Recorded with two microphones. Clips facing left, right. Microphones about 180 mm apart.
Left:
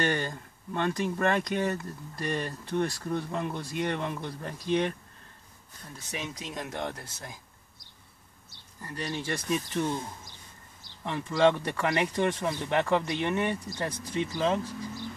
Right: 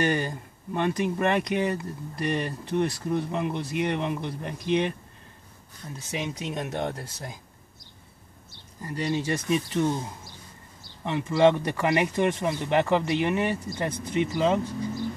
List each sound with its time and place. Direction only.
0.0 s speech: 15° right (ahead or behind)
6.1 s speech: 20° right (ahead or behind)
8.8 s speech: 20° right (ahead or behind)